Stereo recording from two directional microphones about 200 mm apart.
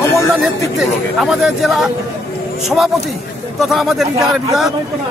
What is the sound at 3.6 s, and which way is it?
Speech, centre (ahead or behind).